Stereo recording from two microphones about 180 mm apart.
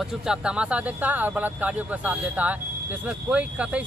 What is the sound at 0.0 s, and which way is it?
Speech, 5° right (ahead or behind).